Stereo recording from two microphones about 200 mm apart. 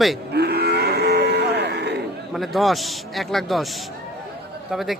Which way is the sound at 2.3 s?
Centre (ahead or behind).